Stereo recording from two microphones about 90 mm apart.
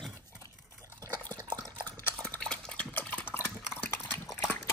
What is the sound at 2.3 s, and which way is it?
Stir, 10° left (ahead or behind).